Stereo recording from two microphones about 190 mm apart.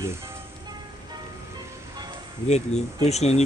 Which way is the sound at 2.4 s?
35° left (ahead or behind).